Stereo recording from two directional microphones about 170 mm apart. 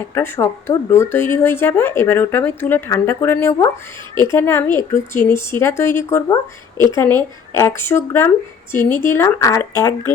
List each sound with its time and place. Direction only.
0.1 s speech: 15° left (ahead or behind)